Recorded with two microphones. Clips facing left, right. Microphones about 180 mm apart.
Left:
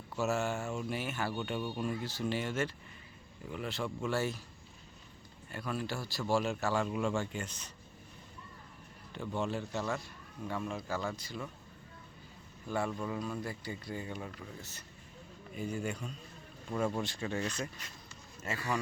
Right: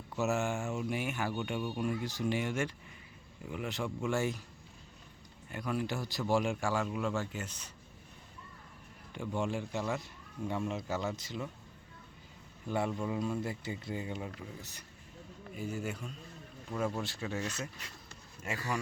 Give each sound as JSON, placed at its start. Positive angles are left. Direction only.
{"t": 0.2, "sound": "speech", "side_deg": -15}
{"t": 5.5, "sound": "speech", "side_deg": -15}
{"t": 6.8, "sound": "speech", "side_deg": 0}
{"t": 9.1, "sound": "speech", "side_deg": -15}
{"t": 12.6, "sound": "speech", "side_deg": -20}
{"t": 15.5, "sound": "speech", "side_deg": -5}